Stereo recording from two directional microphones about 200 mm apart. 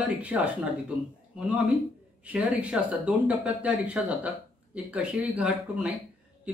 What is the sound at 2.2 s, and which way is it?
Speech, 5° right (ahead or behind).